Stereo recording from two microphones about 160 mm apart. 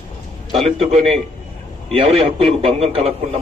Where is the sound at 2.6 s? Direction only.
40° right (ahead or behind).